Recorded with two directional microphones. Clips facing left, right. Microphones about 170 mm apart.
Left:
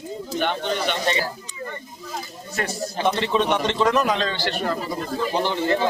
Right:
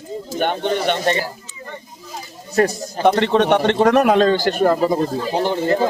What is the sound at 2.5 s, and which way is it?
Speech, 40° right (ahead or behind).